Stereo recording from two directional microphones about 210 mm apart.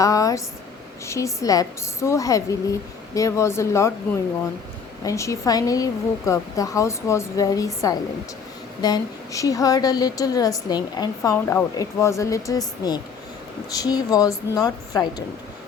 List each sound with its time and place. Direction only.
0.0 s a woman's voice: 15° left (ahead or behind)
5.0 s a woman's voice: 15° left (ahead or behind)